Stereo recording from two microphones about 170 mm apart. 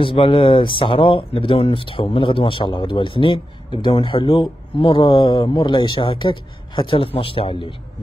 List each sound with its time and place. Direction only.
0.0 s speech: 30° left (ahead or behind)